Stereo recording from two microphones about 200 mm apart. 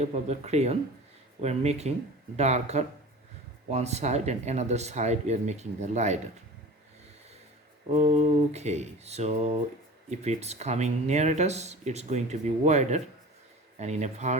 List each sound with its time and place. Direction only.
0.0 s speech: 35° right (ahead or behind)
7.9 s speech: 35° right (ahead or behind)